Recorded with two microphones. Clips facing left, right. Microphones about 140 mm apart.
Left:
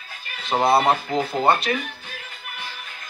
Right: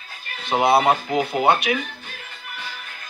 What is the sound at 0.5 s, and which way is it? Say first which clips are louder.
Speech: right 1 dB; 5° right (ahead or behind).